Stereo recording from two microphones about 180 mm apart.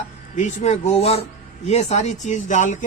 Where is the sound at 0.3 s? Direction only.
40° left (ahead or behind).